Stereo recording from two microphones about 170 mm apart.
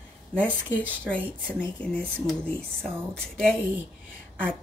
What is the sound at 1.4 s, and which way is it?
Speech, 10° left (ahead or behind).